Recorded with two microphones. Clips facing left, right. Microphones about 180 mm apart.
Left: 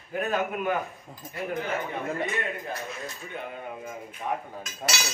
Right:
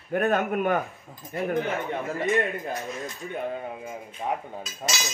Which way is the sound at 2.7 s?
15° right (ahead or behind).